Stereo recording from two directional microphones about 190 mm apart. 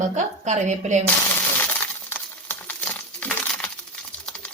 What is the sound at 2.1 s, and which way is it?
Coin, 10° left (ahead or behind).